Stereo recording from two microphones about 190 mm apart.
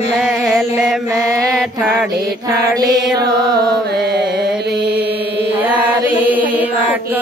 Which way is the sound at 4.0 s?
60° right (ahead or behind).